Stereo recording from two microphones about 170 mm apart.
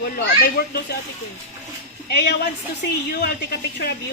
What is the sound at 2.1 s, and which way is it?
Speech, 80° left.